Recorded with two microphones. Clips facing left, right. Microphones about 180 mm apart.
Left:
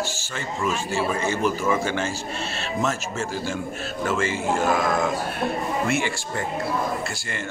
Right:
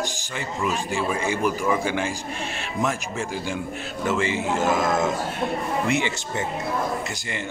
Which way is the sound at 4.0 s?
20° right (ahead or behind).